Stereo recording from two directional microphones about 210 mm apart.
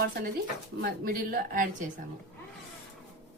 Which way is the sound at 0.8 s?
45° right (ahead or behind).